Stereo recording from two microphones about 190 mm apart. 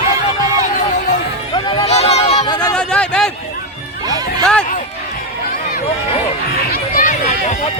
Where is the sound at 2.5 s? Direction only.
20° left (ahead or behind).